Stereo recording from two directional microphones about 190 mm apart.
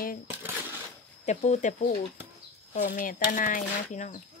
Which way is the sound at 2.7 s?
45° left (ahead or behind).